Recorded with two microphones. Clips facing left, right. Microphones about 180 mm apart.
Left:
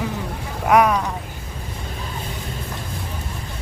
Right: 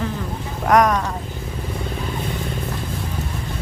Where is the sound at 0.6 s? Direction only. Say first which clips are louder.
Even; 5° left (ahead or behind).